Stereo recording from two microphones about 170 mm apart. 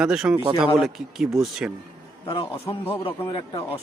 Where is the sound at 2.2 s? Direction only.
30° left (ahead or behind).